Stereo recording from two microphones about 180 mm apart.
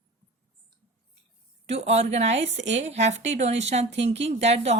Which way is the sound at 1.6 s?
35° right (ahead or behind).